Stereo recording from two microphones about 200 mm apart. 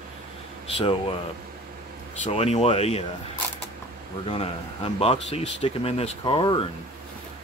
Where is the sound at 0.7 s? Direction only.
30° left (ahead or behind).